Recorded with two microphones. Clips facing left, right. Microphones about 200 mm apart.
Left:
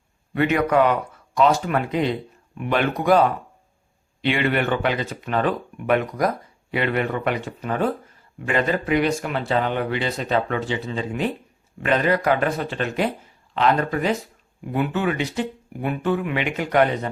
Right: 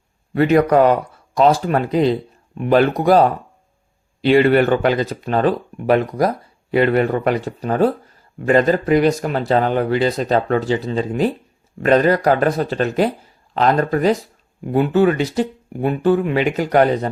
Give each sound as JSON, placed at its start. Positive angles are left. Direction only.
{"t": 0.3, "sound": "speech", "side_deg": -35}